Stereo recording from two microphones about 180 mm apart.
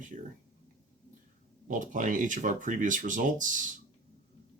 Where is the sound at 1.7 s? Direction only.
45° right (ahead or behind).